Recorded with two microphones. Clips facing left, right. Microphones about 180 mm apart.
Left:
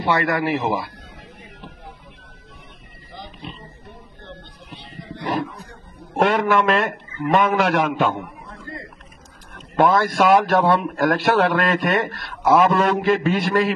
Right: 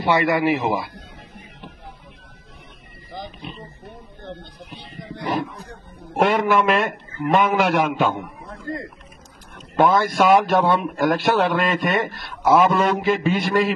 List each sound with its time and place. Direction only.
0.0 s a man's voice: 5° right (ahead or behind)
5.2 s a man's voice: centre (ahead or behind)
8.5 s a sound: 40° right (ahead or behind)
9.6 s a man's voice: centre (ahead or behind)